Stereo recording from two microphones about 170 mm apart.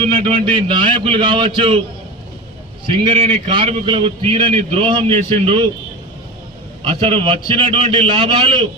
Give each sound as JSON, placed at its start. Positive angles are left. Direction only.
{"t": 0.0, "sound": "a man's voice", "side_deg": -35}
{"t": 2.8, "sound": "a man's voice", "side_deg": -30}
{"t": 6.8, "sound": "a man's voice", "side_deg": -35}